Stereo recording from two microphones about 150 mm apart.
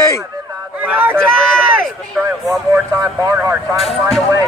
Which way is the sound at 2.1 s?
Centre (ahead or behind).